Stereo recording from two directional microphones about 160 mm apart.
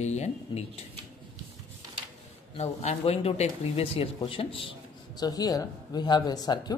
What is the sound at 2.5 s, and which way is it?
Speech, 40° left (ahead or behind).